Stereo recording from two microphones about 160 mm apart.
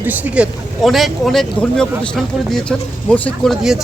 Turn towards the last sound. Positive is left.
turn(degrees=0)  # may be behind; listen again after turning